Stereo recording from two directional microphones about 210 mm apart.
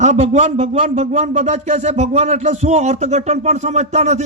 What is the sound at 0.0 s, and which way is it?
Speech, 35° right (ahead or behind).